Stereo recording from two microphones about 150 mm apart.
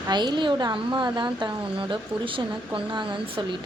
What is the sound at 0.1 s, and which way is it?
A woman's voice, 30° right (ahead or behind).